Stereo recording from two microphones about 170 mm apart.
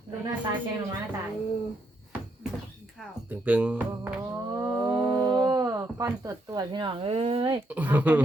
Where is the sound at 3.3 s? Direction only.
10° right (ahead or behind).